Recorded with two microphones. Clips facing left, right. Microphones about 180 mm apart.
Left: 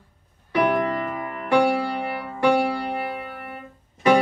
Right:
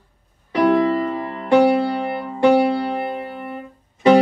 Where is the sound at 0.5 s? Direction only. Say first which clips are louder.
Right 5 dB; 35° right (ahead or behind).